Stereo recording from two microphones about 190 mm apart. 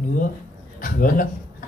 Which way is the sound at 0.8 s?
45° left (ahead or behind).